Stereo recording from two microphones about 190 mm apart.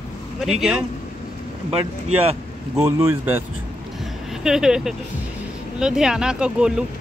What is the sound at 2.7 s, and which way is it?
Speech, 15° right (ahead or behind).